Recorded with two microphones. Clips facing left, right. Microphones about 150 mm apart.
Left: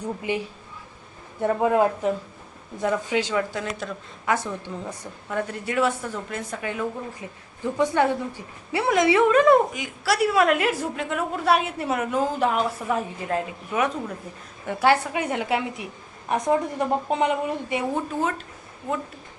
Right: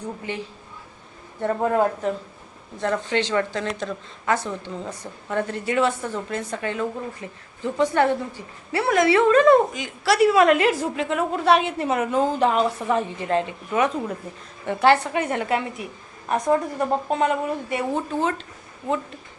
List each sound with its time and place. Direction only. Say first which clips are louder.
0.3 s speech: left 4 dB; 10° left (ahead or behind)
18.2 s speech: right 3 dB; 5° left (ahead or behind)